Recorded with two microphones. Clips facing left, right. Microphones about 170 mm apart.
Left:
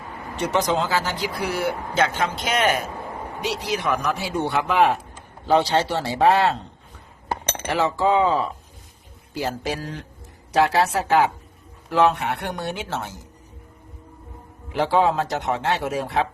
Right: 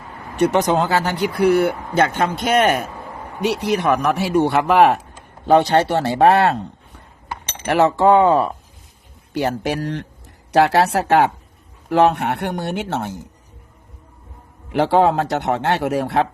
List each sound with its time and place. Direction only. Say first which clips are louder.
0.3 s speech: right 6 dB; 60° right (ahead or behind)
7.7 s a man's voice: right 7 dB; 65° right (ahead or behind)
14.7 s a man's voice: right 4 dB; 65° right (ahead or behind)